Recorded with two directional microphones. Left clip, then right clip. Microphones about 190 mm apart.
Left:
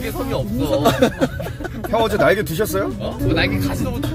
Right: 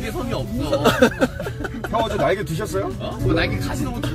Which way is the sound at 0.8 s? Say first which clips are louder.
Right 1 dB; 30° right (ahead or behind).